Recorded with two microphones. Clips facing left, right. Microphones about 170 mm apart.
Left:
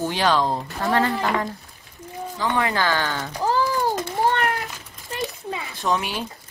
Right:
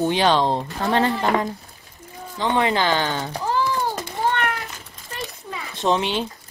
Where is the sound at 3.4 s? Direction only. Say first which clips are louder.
Left 2 dB; 40° left (ahead or behind).